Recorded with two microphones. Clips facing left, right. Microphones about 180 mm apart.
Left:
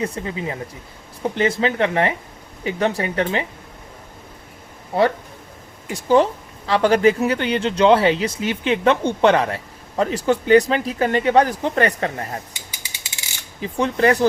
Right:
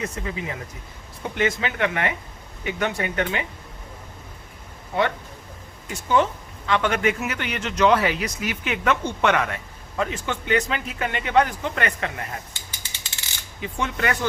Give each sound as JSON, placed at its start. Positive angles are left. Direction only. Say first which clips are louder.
{"t": 0.0, "sound": "a man's voice", "louder": "left 5 dB", "side_deg": 30}
{"t": 5.9, "sound": "a man's voice", "louder": "left 5 dB", "side_deg": 35}
{"t": 12.5, "sound": "mechanisms", "louder": "left 2 dB", "side_deg": 10}
{"t": 13.6, "sound": "a man's voice", "louder": "left 8 dB", "side_deg": 35}